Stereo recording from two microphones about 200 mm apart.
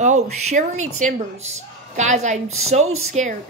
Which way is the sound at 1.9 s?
35° right (ahead or behind).